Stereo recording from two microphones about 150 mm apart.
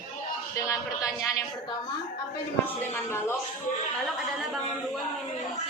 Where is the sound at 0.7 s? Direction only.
20° left (ahead or behind).